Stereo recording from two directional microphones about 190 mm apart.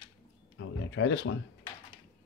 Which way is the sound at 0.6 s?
85° left.